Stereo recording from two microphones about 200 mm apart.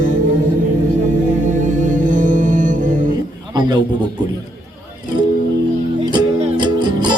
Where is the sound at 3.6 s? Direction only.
20° right (ahead or behind).